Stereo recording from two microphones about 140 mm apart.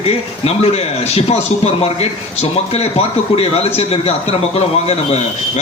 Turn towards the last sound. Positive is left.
turn(degrees=50)  # may be behind; listen again after turning